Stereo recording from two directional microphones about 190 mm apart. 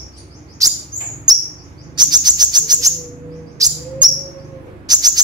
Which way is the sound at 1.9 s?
20° right (ahead or behind).